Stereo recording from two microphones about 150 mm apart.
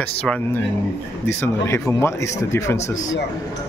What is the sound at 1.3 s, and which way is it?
Speech, 15° left (ahead or behind).